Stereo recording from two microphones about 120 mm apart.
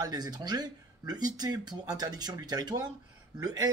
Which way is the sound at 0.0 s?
35° right (ahead or behind).